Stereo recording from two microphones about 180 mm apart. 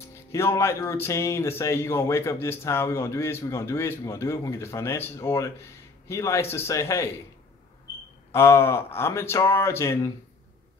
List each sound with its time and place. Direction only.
0.3 s speech: 15° left (ahead or behind)
8.3 s speech: 15° left (ahead or behind)